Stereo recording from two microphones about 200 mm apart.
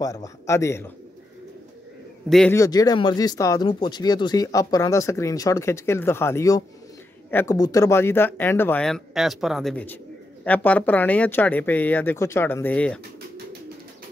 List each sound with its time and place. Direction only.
0.0 s speech: 15° left (ahead or behind)
2.2 s a man's voice: centre (ahead or behind)
2.5 s speech: 15° left (ahead or behind)